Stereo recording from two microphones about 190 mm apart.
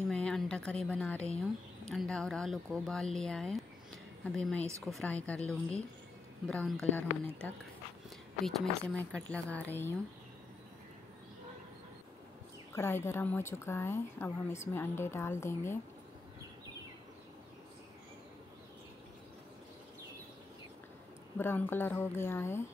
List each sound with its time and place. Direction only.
0.1 s a sound: 5° left (ahead or behind)
1.9 s speech: centre (ahead or behind)
8.5 s a woman's voice: 5° left (ahead or behind)
12.7 s a woman's voice: 15° left (ahead or behind)
21.4 s a woman's voice: 10° left (ahead or behind)